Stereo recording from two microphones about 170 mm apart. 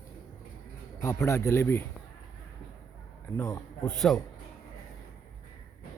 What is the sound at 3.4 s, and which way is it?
Speech, 5° left (ahead or behind).